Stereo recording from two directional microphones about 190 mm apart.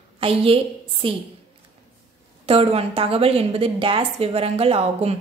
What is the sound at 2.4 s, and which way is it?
A woman's voice, 30° right (ahead or behind).